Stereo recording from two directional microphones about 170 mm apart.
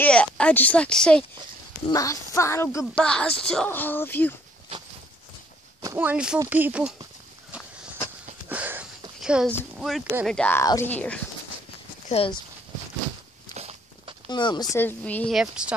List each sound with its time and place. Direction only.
0.0 s speech: 5° left (ahead or behind)
1.9 s speech: 20° left (ahead or behind)
2.9 s speech: 5° left (ahead or behind)
5.8 s speech: 15° right (ahead or behind)
7.5 s walk: 10° right (ahead or behind)
8.5 s a sound: 10° right (ahead or behind)
9.2 s speech: 5° right (ahead or behind)
12.1 s speech: 35° left (ahead or behind)
13.6 s walk: 40° right (ahead or behind)
14.3 s speech: 25° left (ahead or behind)
14.8 s speech: 10° left (ahead or behind)
15.3 s speech: 5° right (ahead or behind)